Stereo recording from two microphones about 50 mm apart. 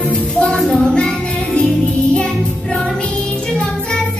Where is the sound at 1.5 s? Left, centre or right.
Centre.